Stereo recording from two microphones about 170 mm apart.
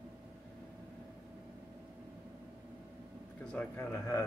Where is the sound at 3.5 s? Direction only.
10° left (ahead or behind).